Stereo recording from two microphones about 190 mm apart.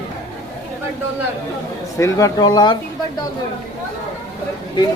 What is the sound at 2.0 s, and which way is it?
Speech, 15° left (ahead or behind).